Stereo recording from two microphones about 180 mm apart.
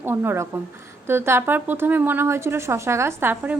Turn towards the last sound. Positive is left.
turn(degrees=-10)  # may be behind; listen again after turning